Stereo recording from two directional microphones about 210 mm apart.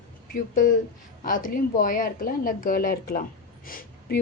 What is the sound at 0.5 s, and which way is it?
A woman's voice, 40° left (ahead or behind).